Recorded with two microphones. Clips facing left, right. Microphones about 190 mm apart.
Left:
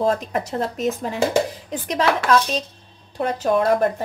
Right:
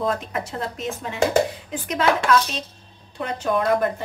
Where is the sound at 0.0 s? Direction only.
40° left (ahead or behind).